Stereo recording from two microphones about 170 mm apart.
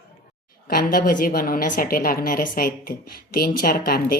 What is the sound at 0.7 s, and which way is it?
A woman's voice, 60° left (ahead or behind).